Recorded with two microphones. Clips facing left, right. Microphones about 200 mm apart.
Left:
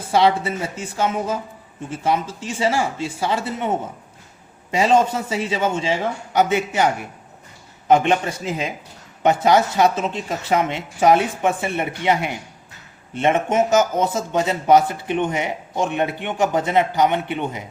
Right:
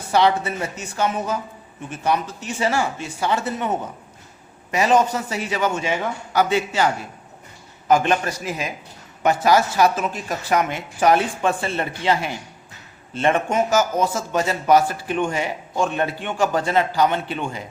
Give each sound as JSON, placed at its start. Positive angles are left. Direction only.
{"t": 0.1, "sound": "a man's voice", "side_deg": 25}
{"t": 4.7, "sound": "a man's voice", "side_deg": 25}